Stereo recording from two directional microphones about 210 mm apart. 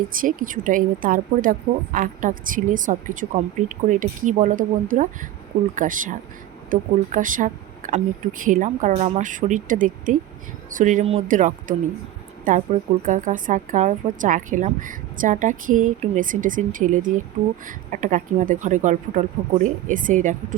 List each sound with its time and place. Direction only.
0.2 s a woman's voice: 40° right (ahead or behind)